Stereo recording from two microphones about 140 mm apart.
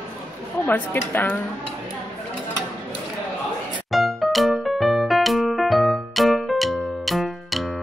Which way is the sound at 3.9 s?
Centre (ahead or behind).